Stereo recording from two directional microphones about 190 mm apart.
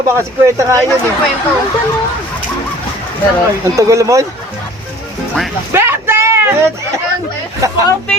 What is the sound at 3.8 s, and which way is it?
Speech, 15° right (ahead or behind).